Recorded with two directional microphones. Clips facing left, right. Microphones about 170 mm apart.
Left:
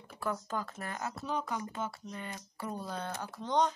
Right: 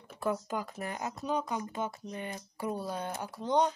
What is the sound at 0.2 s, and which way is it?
Speech, 15° right (ahead or behind).